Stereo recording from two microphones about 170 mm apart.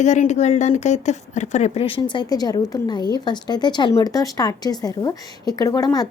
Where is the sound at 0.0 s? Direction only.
45° left (ahead or behind).